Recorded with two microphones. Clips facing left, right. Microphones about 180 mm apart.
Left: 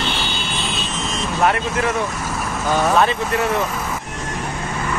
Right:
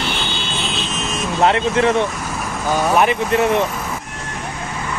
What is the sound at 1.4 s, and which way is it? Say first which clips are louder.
Speech: right 4 dB; 25° right (ahead or behind).